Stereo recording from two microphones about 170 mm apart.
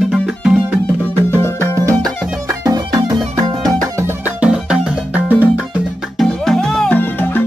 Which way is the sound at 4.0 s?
10° right (ahead or behind).